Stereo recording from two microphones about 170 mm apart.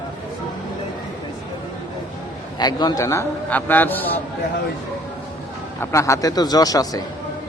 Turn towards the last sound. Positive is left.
turn(degrees=20)  # may be behind; listen again after turning